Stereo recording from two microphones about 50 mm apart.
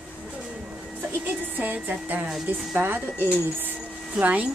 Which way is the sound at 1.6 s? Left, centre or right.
Right.